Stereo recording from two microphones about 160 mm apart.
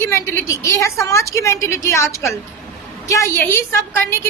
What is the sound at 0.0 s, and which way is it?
A woman's voice, 15° left (ahead or behind).